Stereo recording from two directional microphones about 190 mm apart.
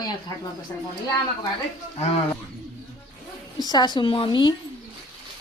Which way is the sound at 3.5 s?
20° left (ahead or behind).